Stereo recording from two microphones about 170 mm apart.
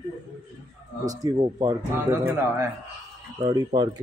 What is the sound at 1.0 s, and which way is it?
Speech, 25° right (ahead or behind).